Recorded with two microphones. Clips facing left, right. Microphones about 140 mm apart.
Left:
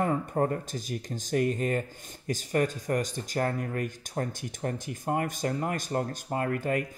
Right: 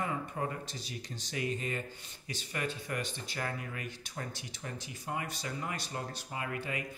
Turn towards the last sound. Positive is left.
turn(degrees=50)  # may be behind; listen again after turning